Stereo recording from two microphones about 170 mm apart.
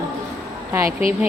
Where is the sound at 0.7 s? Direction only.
15° right (ahead or behind).